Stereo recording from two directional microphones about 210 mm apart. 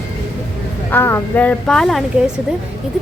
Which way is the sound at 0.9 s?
10° left (ahead or behind).